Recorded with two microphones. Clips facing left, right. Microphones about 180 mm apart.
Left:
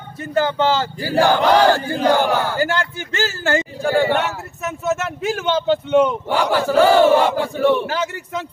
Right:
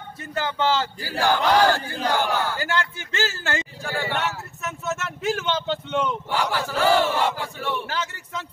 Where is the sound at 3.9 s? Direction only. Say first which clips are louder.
Left 10 dB; 55° left (ahead or behind).